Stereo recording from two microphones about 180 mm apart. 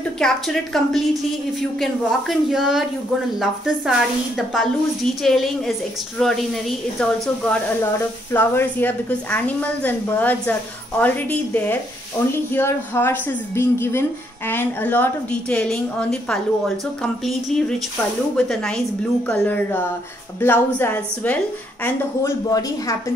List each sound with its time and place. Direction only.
0.2 s a woman's voice: centre (ahead or behind)
5.2 s a woman's voice: centre (ahead or behind)
7.8 s a woman's voice: 15° left (ahead or behind)